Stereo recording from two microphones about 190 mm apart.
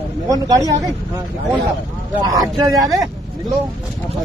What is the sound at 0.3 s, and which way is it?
Speech, 20° right (ahead or behind).